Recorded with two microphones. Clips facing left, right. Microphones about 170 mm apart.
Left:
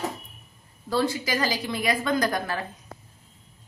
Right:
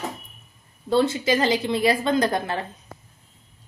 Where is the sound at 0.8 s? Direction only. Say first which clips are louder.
Right 5 dB; 25° right (ahead or behind).